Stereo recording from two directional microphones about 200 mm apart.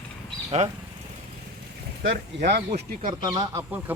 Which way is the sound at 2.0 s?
55° right (ahead or behind).